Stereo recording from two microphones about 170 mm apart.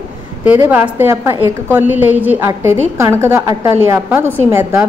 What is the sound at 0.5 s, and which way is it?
A woman's voice, 10° right (ahead or behind).